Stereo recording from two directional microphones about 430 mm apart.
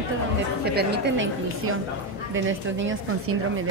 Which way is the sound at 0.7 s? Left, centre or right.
Right.